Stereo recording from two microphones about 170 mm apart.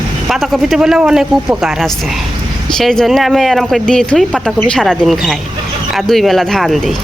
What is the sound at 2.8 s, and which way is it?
Speech, centre (ahead or behind).